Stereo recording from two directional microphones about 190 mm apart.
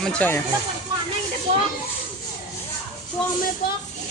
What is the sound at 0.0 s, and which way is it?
Speech, 5° left (ahead or behind).